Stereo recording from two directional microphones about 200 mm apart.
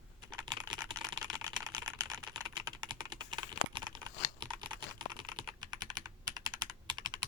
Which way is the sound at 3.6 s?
25° right (ahead or behind).